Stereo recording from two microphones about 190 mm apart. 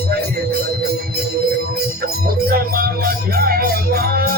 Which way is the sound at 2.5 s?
50° right (ahead or behind).